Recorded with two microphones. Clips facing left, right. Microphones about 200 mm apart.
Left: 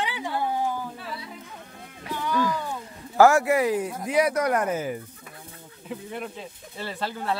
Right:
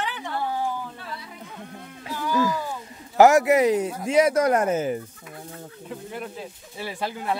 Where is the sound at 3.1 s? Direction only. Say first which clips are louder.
Right 2 dB; 20° right (ahead or behind).